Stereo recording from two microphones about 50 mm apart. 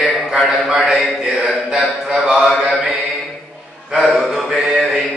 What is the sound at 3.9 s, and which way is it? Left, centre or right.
Speech, centre.